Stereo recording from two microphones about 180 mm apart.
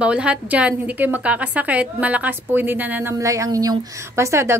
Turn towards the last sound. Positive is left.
turn(degrees=-15)  # may be behind; listen again after turning